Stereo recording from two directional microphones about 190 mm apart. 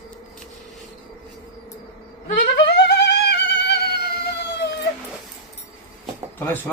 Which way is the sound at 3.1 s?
65° left (ahead or behind).